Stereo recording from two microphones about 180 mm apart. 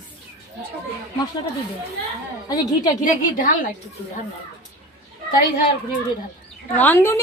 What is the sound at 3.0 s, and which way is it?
Speech, 50° left (ahead or behind).